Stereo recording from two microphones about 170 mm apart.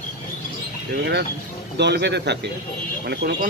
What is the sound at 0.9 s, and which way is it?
A man's voice, 75° right (ahead or behind).